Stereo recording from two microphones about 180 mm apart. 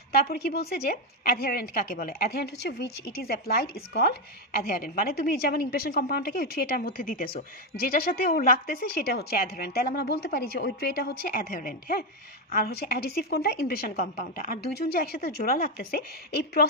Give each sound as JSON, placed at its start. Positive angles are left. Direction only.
{"t": 0.1, "sound": "a woman's voice", "side_deg": 60}
{"t": 13.9, "sound": "a woman's voice", "side_deg": 40}
{"t": 14.2, "sound": "a woman's voice", "side_deg": 50}